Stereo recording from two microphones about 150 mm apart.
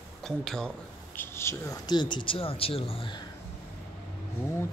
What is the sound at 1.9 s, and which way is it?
Speech, 30° left (ahead or behind).